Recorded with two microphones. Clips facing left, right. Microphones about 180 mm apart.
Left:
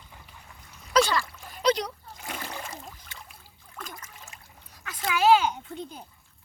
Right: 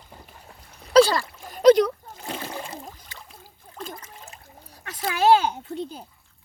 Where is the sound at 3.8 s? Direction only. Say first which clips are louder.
Right 5 dB; 30° right (ahead or behind).